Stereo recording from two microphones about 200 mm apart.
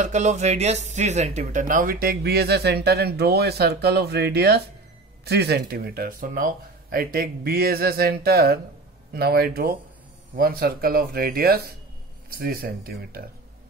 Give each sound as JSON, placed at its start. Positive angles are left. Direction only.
{"t": 0.0, "sound": "speech", "side_deg": -35}